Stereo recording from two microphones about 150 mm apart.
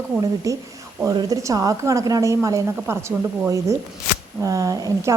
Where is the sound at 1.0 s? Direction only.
25° right (ahead or behind).